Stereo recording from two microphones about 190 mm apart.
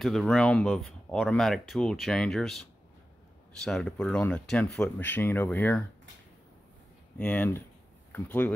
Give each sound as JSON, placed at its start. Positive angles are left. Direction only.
{"t": 0.0, "sound": "speech", "side_deg": 0}
{"t": 3.6, "sound": "speech", "side_deg": 0}
{"t": 7.2, "sound": "speech", "side_deg": 10}